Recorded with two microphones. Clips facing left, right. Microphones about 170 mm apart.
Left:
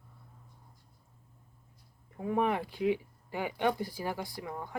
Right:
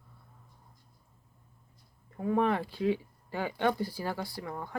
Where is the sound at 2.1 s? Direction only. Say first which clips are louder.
Right 2 dB; 15° left (ahead or behind).